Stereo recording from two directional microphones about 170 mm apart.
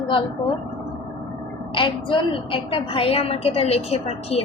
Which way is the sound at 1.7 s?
30° left (ahead or behind).